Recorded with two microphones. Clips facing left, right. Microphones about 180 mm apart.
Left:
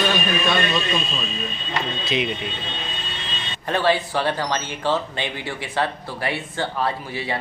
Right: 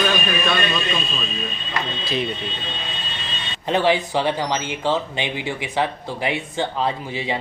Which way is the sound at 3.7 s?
15° right (ahead or behind).